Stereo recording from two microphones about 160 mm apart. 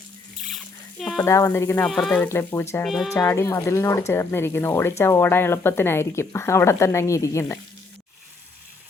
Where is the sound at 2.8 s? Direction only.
Centre (ahead or behind).